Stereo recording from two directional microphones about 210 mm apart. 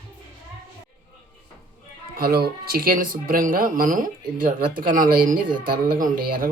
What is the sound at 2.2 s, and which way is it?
Speech, 45° right (ahead or behind).